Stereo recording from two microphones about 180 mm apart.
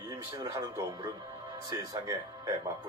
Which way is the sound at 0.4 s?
20° right (ahead or behind).